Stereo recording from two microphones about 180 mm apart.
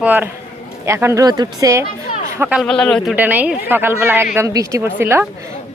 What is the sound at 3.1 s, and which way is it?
Speech, 10° right (ahead or behind).